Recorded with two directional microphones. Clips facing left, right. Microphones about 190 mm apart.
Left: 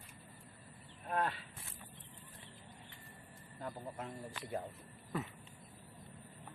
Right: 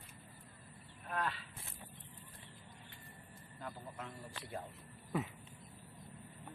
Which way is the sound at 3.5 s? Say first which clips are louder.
Left 3 dB; 45° left (ahead or behind).